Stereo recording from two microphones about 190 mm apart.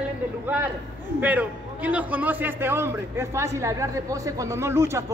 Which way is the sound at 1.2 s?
10° right (ahead or behind).